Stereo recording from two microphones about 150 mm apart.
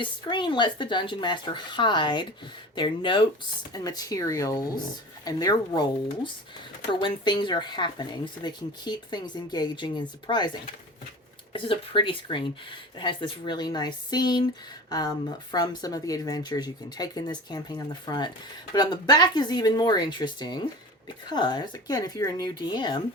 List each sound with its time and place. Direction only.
0.0 s speech: 30° left (ahead or behind)